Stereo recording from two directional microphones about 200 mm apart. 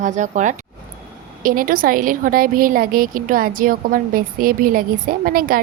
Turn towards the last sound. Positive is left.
turn(degrees=-45)  # may be behind; listen again after turning